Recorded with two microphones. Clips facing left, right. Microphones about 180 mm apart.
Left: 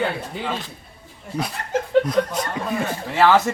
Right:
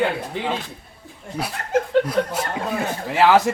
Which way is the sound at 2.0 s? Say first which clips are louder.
Left 1 dB; 10° right (ahead or behind).